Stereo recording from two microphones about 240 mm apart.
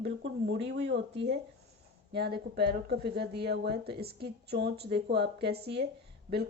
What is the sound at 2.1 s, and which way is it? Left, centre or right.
Speech, right.